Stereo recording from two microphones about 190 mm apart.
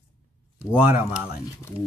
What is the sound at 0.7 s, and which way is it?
Speech, 5° right (ahead or behind).